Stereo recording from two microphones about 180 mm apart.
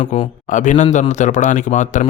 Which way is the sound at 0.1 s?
40° left (ahead or behind).